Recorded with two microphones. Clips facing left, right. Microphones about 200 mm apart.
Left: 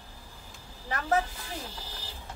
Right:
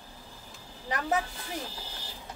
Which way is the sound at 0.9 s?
20° right (ahead or behind).